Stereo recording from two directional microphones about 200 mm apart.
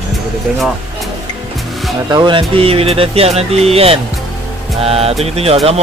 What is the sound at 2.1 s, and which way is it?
Speech, 25° right (ahead or behind).